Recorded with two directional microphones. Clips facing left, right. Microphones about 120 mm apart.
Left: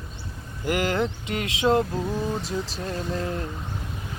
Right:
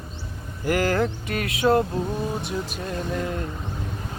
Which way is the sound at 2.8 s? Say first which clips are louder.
Right 1 dB; 30° left (ahead or behind).